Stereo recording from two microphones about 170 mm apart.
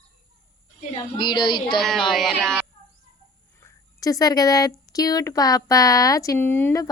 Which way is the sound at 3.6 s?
20° left (ahead or behind).